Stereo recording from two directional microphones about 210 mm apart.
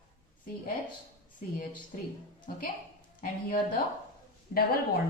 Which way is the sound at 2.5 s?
40° left (ahead or behind).